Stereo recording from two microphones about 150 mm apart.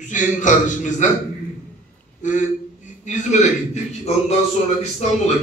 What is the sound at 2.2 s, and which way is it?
A man's voice, 55° left (ahead or behind).